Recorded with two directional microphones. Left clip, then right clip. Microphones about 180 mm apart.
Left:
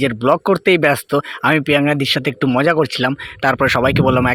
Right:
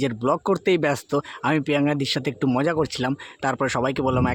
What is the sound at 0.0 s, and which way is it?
Speech, 10° left (ahead or behind).